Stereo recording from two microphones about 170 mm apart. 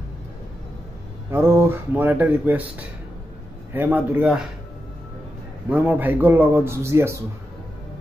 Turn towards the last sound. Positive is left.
turn(degrees=-15)  # may be behind; listen again after turning